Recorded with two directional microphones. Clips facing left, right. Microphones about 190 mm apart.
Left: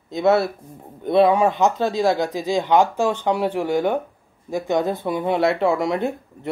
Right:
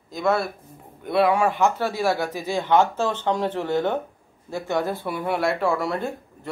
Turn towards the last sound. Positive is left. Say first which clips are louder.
# left 4 dB
turn(degrees=20)  # may be behind; listen again after turning